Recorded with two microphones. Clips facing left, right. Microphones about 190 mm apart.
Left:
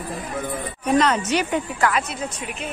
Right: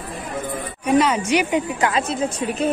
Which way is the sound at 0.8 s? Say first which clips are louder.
Right 2 dB; 10° right (ahead or behind).